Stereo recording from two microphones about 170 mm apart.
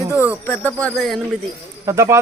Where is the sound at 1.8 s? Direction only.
20° right (ahead or behind).